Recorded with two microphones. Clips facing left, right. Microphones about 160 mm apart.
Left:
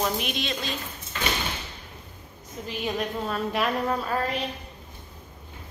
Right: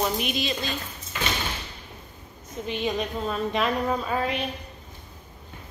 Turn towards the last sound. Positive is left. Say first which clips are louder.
# right 1 dB
turn(degrees=0)  # may be behind; listen again after turning